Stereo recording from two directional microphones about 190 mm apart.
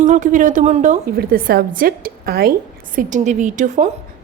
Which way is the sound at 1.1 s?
50° right (ahead or behind).